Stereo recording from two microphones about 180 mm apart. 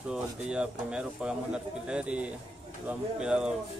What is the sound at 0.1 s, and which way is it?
Speech, 5° right (ahead or behind).